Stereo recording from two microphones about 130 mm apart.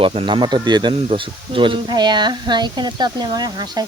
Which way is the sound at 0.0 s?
45° right (ahead or behind).